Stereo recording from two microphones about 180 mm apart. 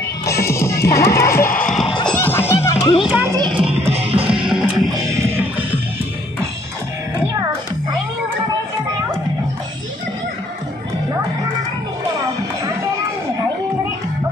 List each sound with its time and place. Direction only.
0.3 s music: 15° left (ahead or behind)
1.6 s music: centre (ahead or behind)
2.1 s music: 10° left (ahead or behind)
3.1 s speech: 10° right (ahead or behind)
3.3 s music: 25° right (ahead or behind)
4.5 s music: 5° right (ahead or behind)